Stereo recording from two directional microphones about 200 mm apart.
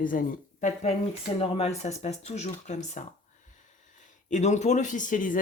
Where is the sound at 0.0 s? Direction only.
40° left (ahead or behind).